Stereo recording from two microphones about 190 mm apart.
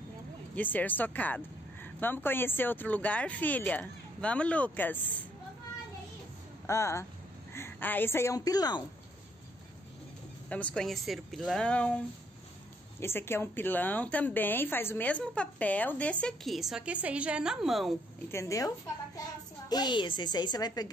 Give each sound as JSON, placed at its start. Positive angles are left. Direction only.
{"t": 0.6, "sound": "a woman's voice", "side_deg": 10}
{"t": 6.6, "sound": "a woman's voice", "side_deg": 15}
{"t": 10.5, "sound": "a woman's voice", "side_deg": 5}
{"t": 13.0, "sound": "a woman's voice", "side_deg": 15}
{"t": 18.3, "sound": "a woman's voice", "side_deg": 15}
{"t": 19.7, "sound": "a woman's voice", "side_deg": 25}